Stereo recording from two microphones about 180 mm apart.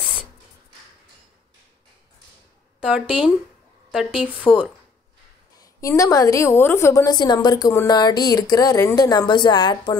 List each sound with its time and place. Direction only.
0.0 s a sound: centre (ahead or behind)
2.8 s speech: 5° right (ahead or behind)
5.6 s a woman's voice: 15° left (ahead or behind)